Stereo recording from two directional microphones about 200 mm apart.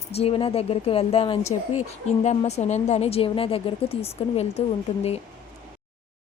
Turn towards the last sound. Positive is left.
turn(degrees=30)  # may be behind; listen again after turning